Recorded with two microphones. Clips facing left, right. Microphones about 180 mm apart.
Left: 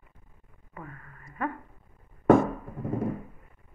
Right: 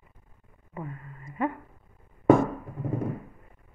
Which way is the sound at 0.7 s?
20° right (ahead or behind).